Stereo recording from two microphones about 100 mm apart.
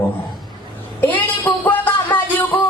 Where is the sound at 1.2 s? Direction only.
15° left (ahead or behind).